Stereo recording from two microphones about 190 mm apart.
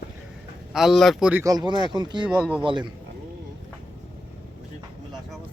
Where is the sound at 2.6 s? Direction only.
25° right (ahead or behind).